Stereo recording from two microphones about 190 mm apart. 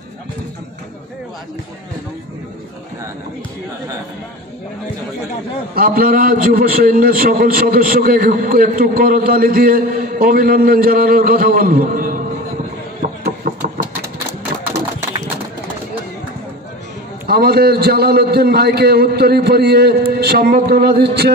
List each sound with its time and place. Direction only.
5.8 s a man's voice: 50° right (ahead or behind)
13.0 s a sound: 50° right (ahead or behind)
17.3 s a man's voice: 55° right (ahead or behind)